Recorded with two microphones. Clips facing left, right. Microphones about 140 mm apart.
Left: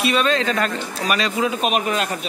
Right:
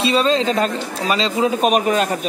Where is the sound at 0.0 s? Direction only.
25° right (ahead or behind).